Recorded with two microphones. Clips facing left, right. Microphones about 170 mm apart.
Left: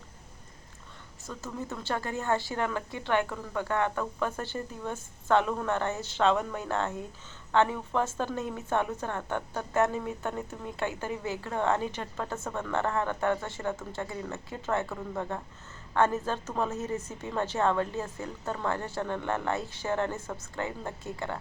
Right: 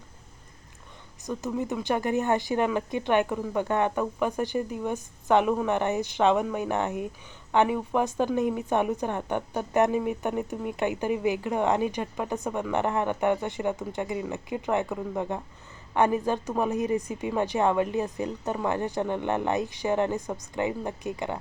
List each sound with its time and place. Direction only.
1.2 s speech: 15° right (ahead or behind)